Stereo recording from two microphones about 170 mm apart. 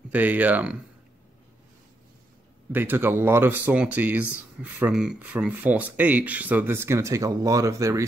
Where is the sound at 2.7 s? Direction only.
10° right (ahead or behind).